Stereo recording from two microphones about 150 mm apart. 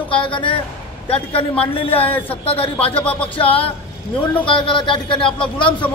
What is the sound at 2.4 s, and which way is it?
A woman's voice, 40° left (ahead or behind).